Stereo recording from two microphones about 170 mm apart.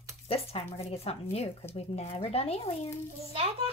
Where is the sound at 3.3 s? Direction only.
35° right (ahead or behind).